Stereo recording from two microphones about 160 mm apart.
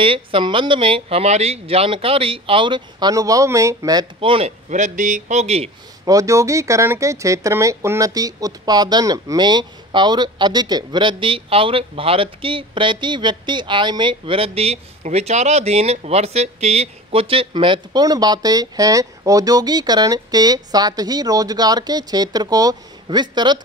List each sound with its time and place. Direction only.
0.0 s speech: 35° right (ahead or behind)
4.2 s speech: 35° right (ahead or behind)
4.5 s a man's voice: 50° right (ahead or behind)
6.0 s speech: 20° right (ahead or behind)